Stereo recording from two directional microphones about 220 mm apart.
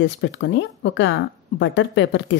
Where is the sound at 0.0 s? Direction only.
55° left (ahead or behind).